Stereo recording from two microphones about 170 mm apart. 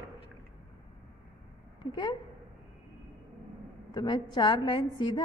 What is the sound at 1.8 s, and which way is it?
Speech, 30° left (ahead or behind).